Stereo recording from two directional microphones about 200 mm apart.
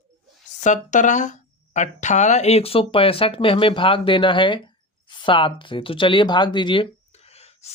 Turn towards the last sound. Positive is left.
turn(degrees=30)  # may be behind; listen again after turning